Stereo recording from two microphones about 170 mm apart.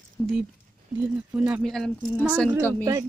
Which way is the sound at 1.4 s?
10° right (ahead or behind).